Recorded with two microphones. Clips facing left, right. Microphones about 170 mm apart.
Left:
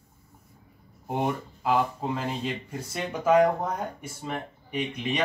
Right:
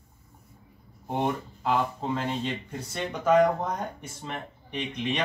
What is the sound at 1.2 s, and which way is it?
Speech, 5° left (ahead or behind).